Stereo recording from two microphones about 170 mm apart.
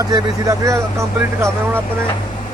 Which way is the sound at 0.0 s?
20° right (ahead or behind).